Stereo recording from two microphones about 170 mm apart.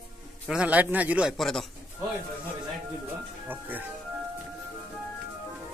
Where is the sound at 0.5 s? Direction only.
5° right (ahead or behind).